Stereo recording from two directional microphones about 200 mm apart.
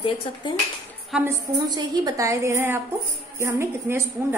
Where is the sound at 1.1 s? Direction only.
10° right (ahead or behind).